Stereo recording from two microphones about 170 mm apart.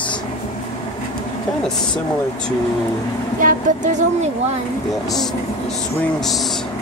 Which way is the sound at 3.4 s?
45° right (ahead or behind).